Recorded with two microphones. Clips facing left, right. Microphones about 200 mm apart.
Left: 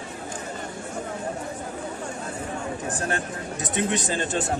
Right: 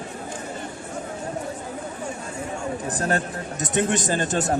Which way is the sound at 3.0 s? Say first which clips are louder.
Right 4 dB; 40° right (ahead or behind).